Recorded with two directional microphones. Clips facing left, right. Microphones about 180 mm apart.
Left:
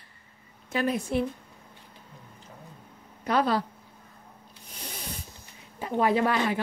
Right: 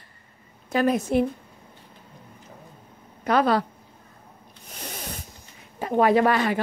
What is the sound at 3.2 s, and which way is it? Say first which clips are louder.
Speech: right 4 dB; 80° right.